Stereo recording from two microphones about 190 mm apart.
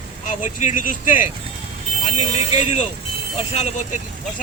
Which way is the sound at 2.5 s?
35° left (ahead or behind).